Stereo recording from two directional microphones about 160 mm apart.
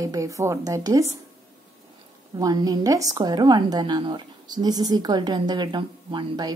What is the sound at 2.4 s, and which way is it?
A woman's voice, 25° right (ahead or behind).